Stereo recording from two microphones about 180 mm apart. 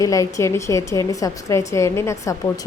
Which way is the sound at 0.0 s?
15° left (ahead or behind).